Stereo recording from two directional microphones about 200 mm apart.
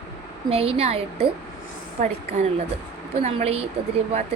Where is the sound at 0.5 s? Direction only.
30° right (ahead or behind).